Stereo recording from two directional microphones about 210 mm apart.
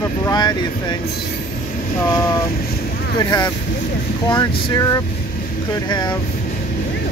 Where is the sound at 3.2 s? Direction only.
15° left (ahead or behind).